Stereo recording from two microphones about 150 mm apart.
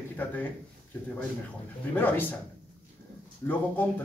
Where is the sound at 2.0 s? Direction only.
10° left (ahead or behind).